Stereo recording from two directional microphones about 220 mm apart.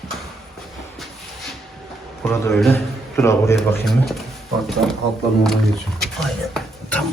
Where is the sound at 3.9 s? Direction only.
Centre (ahead or behind).